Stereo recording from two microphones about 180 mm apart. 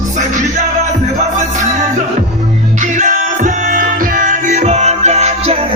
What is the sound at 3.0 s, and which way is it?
Music, 45° right (ahead or behind).